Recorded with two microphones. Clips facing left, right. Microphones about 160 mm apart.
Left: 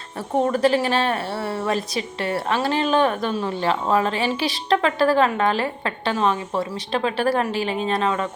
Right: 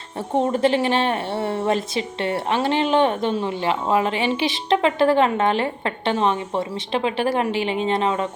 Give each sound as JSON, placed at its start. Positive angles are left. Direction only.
{"t": 0.3, "sound": "a woman's voice", "side_deg": -25}